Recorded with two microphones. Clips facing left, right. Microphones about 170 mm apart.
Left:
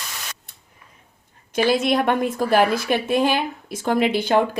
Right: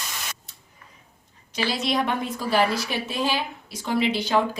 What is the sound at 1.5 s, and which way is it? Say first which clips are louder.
A woman's voice: left 7 dB; 50° left (ahead or behind).